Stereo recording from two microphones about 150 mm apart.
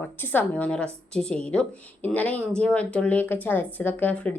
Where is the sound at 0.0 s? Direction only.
10° left (ahead or behind).